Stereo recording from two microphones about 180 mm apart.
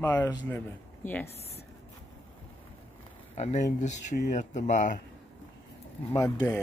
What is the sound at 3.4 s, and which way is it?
Speech, 40° left (ahead or behind).